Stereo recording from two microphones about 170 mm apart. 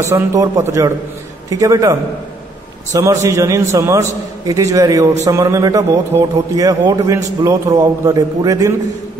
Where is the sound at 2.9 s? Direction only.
15° right (ahead or behind).